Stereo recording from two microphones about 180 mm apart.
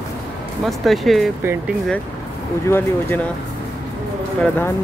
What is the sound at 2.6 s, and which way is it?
Speech, 10° left (ahead or behind).